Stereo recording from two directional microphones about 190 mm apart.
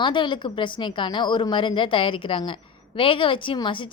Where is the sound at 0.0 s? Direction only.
25° left (ahead or behind).